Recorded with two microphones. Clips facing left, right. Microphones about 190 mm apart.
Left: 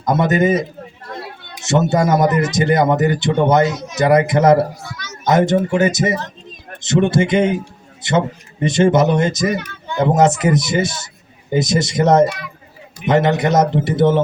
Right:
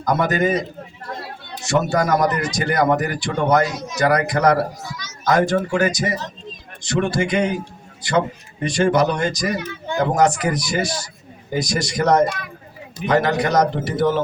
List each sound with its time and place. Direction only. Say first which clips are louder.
0.0 s speech: left 3 dB; 25° left (ahead or behind)
1.6 s speech: left 3 dB; 20° left (ahead or behind)
4.9 s speech: left 1 dB; 55° left (ahead or behind)
5.2 s speech: left 3 dB; 25° left (ahead or behind)